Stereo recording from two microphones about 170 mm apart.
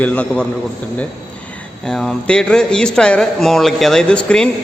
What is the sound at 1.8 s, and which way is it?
A man's voice, 5° left (ahead or behind).